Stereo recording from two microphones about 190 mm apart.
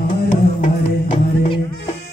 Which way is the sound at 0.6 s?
30° left (ahead or behind).